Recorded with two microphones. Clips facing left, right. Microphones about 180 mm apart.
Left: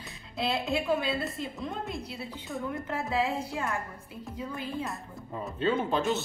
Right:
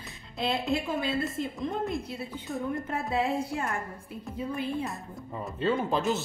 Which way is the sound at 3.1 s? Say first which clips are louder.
Right 2 dB; 55° right (ahead or behind).